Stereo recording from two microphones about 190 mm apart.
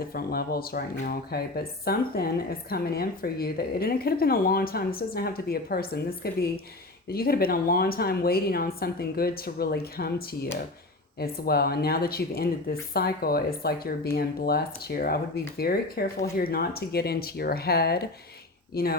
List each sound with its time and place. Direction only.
0.1 s speech: 55° left (ahead or behind)